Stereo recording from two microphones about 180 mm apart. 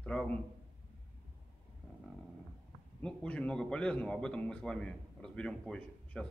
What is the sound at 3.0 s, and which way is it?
A man's voice, 5° left (ahead or behind).